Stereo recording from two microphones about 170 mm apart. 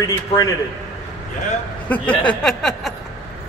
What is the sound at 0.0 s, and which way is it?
Speech, 20° left (ahead or behind).